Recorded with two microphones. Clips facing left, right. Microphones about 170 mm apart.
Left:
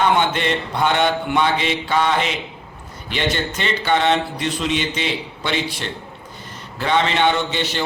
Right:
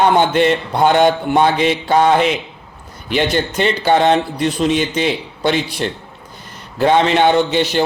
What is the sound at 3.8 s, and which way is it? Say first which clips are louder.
A man's voice: right 4 dB; 40° right (ahead or behind).